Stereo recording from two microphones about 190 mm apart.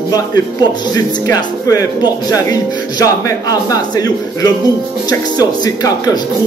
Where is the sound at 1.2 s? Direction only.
15° left (ahead or behind).